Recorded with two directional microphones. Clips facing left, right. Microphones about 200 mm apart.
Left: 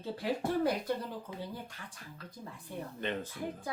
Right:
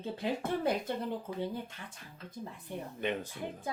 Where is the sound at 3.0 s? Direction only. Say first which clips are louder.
Right 1 dB; 15° right (ahead or behind).